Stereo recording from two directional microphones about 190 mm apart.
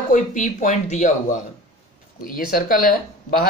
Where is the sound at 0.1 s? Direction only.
40° left (ahead or behind).